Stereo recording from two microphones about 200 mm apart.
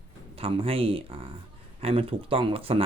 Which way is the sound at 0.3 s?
30° right (ahead or behind).